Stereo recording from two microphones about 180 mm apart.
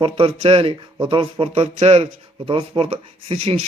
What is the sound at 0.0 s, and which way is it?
Speech, 30° right (ahead or behind).